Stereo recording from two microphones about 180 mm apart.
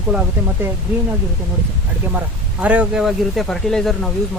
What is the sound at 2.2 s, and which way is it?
Speech, 10° right (ahead or behind).